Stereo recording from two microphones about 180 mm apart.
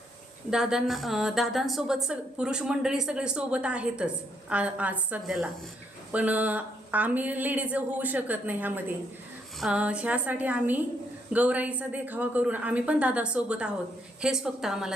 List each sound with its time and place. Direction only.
0.5 s a woman's voice: 5° right (ahead or behind)